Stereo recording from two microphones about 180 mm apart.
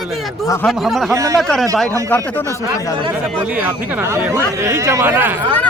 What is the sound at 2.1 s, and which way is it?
Speech, 15° left (ahead or behind).